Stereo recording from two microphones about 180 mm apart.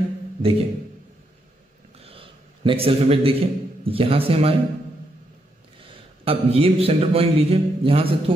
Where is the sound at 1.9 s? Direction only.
30° right (ahead or behind).